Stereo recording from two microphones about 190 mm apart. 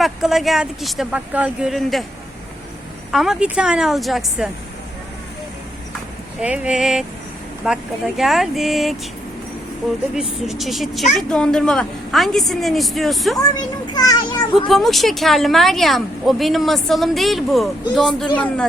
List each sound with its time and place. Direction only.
0.0 s a woman's voice: centre (ahead or behind)
3.1 s a woman's voice: centre (ahead or behind)
6.4 s a woman's voice: 5° right (ahead or behind)
10.2 s a woman's voice: centre (ahead or behind)
13.3 s a child's voice: 20° left (ahead or behind)
14.7 s a woman's voice: centre (ahead or behind)